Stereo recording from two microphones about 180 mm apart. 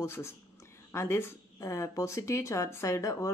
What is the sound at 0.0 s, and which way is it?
A woman's voice, 15° left (ahead or behind).